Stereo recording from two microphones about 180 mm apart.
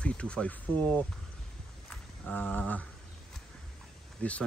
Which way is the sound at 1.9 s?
10° left (ahead or behind).